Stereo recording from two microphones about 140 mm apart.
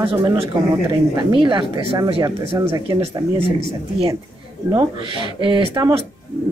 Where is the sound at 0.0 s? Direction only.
40° right (ahead or behind).